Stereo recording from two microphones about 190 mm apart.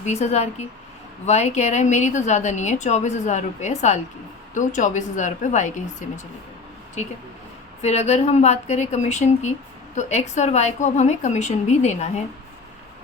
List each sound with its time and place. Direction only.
0.0 s a woman's voice: 35° left (ahead or behind)
7.8 s a woman's voice: 35° left (ahead or behind)